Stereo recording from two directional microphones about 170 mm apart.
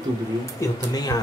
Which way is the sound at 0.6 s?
20° left (ahead or behind).